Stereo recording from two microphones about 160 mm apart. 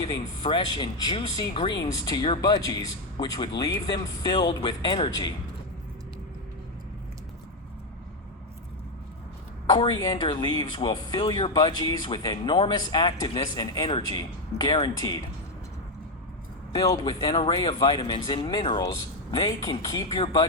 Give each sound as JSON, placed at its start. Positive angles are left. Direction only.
{"t": 0.4, "sound": "speech", "side_deg": 30}
{"t": 9.6, "sound": "speech", "side_deg": 25}
{"t": 16.7, "sound": "speech", "side_deg": 25}